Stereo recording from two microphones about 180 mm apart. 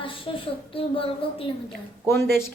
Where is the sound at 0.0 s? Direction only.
30° left (ahead or behind).